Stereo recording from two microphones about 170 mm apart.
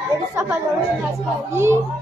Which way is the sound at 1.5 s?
15° right (ahead or behind).